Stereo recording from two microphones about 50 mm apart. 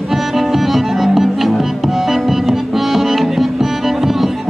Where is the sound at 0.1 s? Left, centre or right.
Centre.